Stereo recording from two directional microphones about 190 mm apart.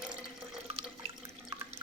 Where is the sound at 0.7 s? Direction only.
35° right (ahead or behind).